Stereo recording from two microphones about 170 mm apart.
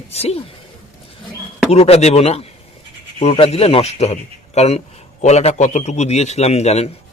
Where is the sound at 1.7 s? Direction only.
35° left (ahead or behind).